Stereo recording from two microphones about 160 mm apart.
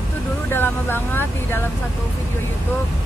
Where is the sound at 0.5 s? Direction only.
15° left (ahead or behind).